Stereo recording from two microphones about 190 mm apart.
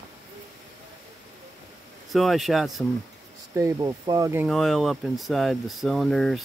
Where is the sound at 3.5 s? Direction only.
15° right (ahead or behind).